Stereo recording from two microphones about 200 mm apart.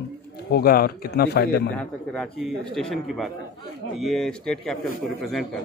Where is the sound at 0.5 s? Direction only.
50° left (ahead or behind).